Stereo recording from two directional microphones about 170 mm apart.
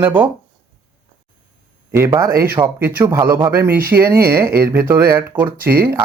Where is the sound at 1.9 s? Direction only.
15° right (ahead or behind).